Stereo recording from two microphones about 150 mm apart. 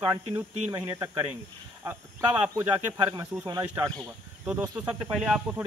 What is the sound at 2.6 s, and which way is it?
Speech, 15° right (ahead or behind).